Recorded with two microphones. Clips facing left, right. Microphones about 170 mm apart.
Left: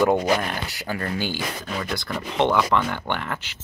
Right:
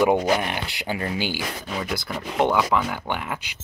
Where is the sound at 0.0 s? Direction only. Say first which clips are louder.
Even; 10° right (ahead or behind).